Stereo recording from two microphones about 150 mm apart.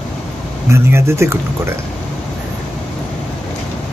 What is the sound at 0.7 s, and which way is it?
Speech, 15° right (ahead or behind).